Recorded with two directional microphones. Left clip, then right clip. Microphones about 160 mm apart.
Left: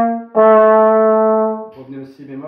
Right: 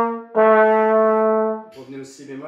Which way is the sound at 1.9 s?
15° right (ahead or behind).